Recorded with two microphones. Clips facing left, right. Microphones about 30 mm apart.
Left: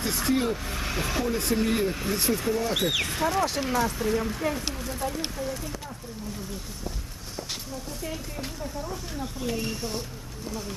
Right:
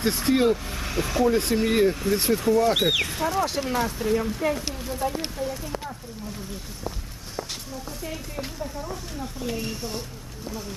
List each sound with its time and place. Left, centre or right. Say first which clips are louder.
0.3 s speech: right 5 dB; right
0.5 s speech: right 3 dB; centre
1.3 s speech: right 3 dB; right
1.9 s speech: right 5 dB; centre
2.1 s speech: right 3 dB; centre
2.4 s speech: right 6 dB; centre
2.6 s speech: right 4 dB; centre
3.1 s speech: even; centre
8.0 s speech: right 2 dB; centre